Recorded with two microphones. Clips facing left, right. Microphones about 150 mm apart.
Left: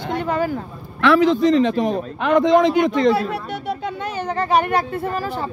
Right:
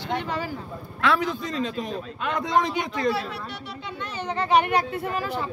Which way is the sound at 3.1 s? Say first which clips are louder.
Left 8 dB; 50° left (ahead or behind).